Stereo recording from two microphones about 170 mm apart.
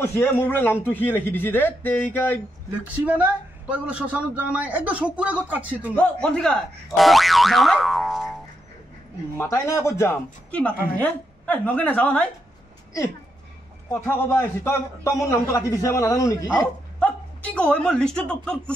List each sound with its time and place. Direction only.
0.0 s a man's voice: 15° left (ahead or behind)
3.1 s a man's voice: 10° right (ahead or behind)
5.9 s speech: 5° left (ahead or behind)
9.4 s a man's voice: 15° left (ahead or behind)
13.9 s a man's voice: 15° left (ahead or behind)
17.0 s speech: 10° left (ahead or behind)